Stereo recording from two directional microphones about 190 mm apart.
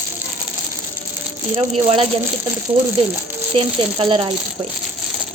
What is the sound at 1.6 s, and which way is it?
Speech, 30° right (ahead or behind).